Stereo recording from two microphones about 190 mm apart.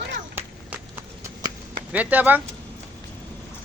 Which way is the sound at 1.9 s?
10° right (ahead or behind).